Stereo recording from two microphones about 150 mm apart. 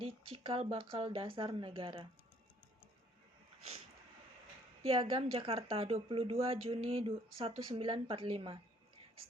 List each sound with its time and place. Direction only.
0.0 s a woman's voice: 35° right (ahead or behind)
4.8 s a woman's voice: 40° right (ahead or behind)